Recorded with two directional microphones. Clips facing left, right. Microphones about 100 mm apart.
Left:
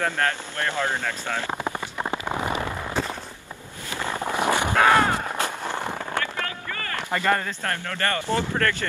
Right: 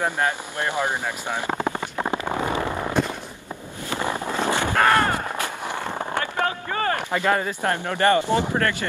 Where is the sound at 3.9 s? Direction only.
15° right (ahead or behind).